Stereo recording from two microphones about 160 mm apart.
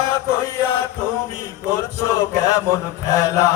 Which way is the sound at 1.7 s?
20° left (ahead or behind).